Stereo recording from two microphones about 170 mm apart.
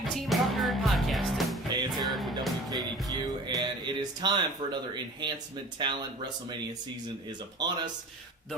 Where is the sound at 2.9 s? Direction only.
25° right (ahead or behind).